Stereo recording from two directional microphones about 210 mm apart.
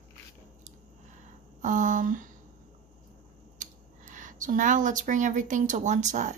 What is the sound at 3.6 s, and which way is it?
Speech, 35° right (ahead or behind).